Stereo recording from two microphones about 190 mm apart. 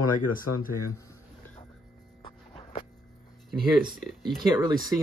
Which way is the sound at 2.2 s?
35° left (ahead or behind).